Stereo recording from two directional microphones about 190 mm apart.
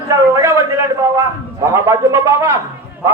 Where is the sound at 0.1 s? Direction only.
15° right (ahead or behind).